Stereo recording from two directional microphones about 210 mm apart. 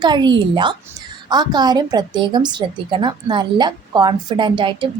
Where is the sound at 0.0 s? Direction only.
20° right (ahead or behind).